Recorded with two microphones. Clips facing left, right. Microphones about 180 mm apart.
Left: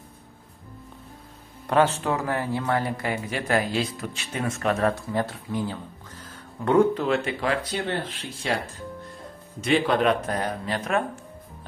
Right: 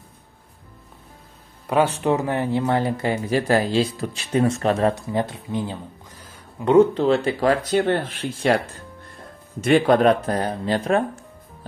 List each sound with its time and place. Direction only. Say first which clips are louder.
1.7 s speech: right 2 dB; 10° right (ahead or behind)
6.9 s speech: right 5 dB; 30° right (ahead or behind)
8.4 s speech: right 8 dB; 60° right (ahead or behind)
9.6 s speech: right 6 dB; 45° right (ahead or behind); by 11.1 s 30° right (ahead or behind)